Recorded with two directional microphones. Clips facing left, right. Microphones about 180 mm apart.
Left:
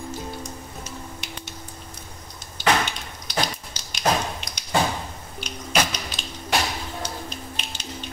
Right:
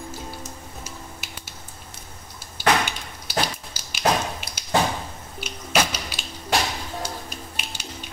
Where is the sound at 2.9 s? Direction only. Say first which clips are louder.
Even; 10° right (ahead or behind).